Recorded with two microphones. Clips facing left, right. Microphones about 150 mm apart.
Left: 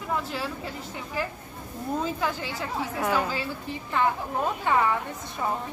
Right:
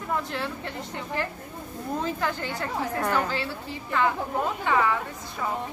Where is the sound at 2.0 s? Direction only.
5° left (ahead or behind).